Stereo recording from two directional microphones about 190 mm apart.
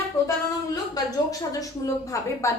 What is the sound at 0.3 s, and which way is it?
Speech, 20° left (ahead or behind).